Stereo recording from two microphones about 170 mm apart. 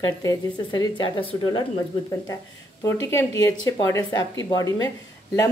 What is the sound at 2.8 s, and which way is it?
A woman's voice, 15° left (ahead or behind).